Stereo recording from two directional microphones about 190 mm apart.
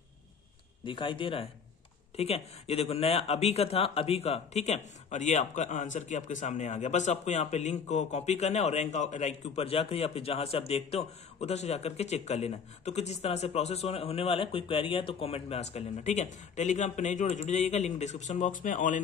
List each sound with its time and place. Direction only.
0.8 s speech: 25° left (ahead or behind); by 18.9 s 45° left (ahead or behind)